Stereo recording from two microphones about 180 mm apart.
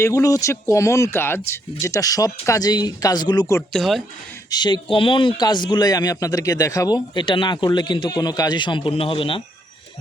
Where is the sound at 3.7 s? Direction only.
Centre (ahead or behind).